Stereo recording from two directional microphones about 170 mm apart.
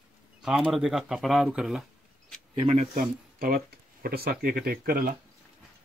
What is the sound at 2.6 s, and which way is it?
Speech, 45° right (ahead or behind).